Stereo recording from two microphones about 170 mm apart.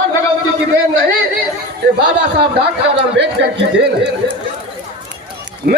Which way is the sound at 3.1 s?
90° right.